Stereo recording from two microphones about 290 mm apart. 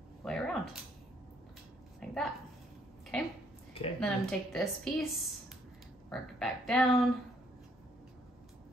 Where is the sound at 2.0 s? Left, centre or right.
Centre.